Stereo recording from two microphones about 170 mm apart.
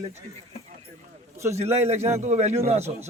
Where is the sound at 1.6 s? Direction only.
40° right (ahead or behind).